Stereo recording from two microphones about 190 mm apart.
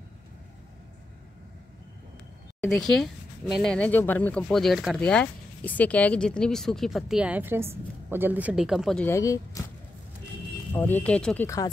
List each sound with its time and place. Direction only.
2.8 s speech: centre (ahead or behind)
9.0 s speech: 15° left (ahead or behind)
10.7 s speech: 10° left (ahead or behind)